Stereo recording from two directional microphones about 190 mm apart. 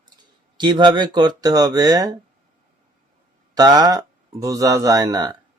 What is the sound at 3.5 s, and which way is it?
Speech, 20° right (ahead or behind).